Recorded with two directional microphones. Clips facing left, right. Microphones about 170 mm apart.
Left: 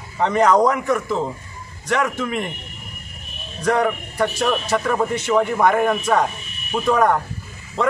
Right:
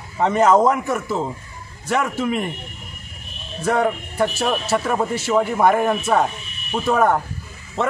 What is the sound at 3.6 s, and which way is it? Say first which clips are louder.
A man's voice: even; 5° right (ahead or behind).